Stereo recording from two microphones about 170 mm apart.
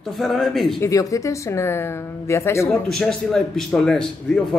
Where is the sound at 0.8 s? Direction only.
20° left (ahead or behind).